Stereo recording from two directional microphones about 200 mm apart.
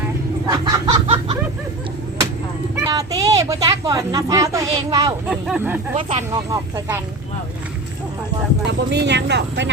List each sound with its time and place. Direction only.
0.4 s a sound: 20° right (ahead or behind)
2.8 s speech: 15° right (ahead or behind)
5.3 s speech: 5° right (ahead or behind)
6.0 s speech: 30° right (ahead or behind)
6.3 s speech: 15° right (ahead or behind)
8.6 s speech: 60° right (ahead or behind)